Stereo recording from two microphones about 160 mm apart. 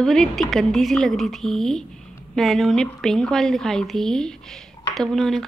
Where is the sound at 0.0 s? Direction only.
Centre (ahead or behind).